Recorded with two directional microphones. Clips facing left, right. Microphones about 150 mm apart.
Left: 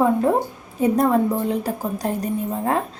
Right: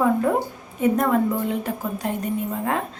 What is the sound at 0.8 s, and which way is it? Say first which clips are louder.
A woman's voice: left 2 dB; 35° left (ahead or behind).